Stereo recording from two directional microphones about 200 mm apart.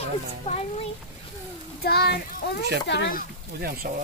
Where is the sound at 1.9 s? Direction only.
50° left (ahead or behind).